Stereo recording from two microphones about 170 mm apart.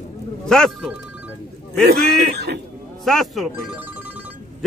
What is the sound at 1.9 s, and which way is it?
Speech, 70° right (ahead or behind).